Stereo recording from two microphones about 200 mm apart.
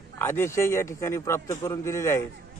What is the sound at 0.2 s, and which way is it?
A man's voice, 10° left (ahead or behind).